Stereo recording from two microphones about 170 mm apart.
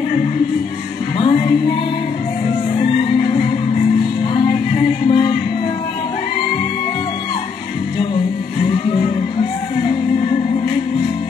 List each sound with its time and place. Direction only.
1.1 s music: 30° left (ahead or behind)
2.8 s music: 30° left (ahead or behind)
8.8 s music: 30° left (ahead or behind)